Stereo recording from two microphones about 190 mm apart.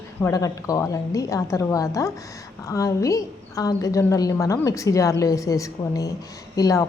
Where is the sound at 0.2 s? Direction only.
15° left (ahead or behind).